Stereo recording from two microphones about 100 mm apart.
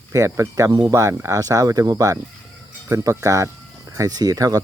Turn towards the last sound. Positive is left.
turn(degrees=-40)  # may be behind; listen again after turning